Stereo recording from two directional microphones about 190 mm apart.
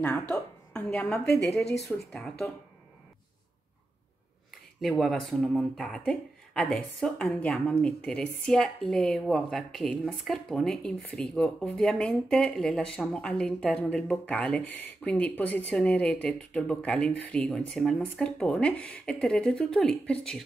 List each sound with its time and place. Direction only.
0.0 s a woman's voice: 10° left (ahead or behind)
1.6 s speech: 60° left (ahead or behind)
2.1 s speech: 5° left (ahead or behind)
4.8 s speech: centre (ahead or behind)